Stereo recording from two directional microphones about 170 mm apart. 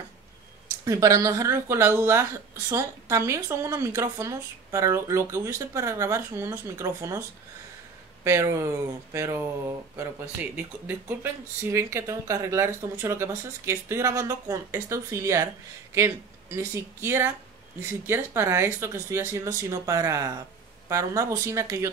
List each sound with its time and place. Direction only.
0.8 s speech: 20° right (ahead or behind)